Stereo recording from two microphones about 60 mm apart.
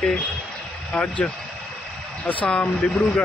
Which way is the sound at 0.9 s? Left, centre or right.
Left.